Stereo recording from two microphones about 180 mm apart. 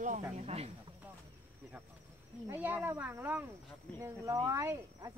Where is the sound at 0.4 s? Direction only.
35° right (ahead or behind).